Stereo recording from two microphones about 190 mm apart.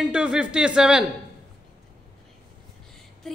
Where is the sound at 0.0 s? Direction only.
5° right (ahead or behind).